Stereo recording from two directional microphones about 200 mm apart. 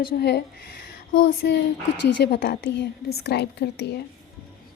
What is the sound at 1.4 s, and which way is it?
A woman's voice, 55° left (ahead or behind).